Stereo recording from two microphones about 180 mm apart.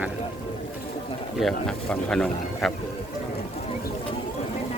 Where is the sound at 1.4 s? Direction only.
5° left (ahead or behind).